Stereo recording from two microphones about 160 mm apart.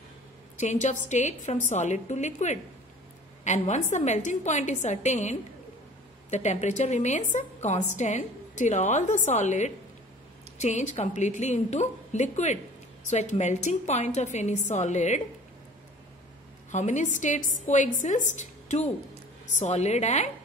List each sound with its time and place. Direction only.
0.6 s a woman's voice: 45° left (ahead or behind)
16.7 s a woman's voice: 50° left (ahead or behind)